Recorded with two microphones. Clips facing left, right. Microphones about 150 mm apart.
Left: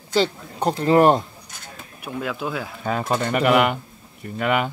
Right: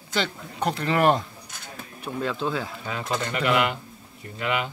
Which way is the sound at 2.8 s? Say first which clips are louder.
Left 10 dB; 50° left (ahead or behind).